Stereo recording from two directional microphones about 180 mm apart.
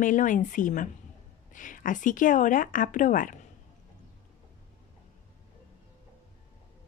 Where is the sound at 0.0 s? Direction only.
45° left (ahead or behind).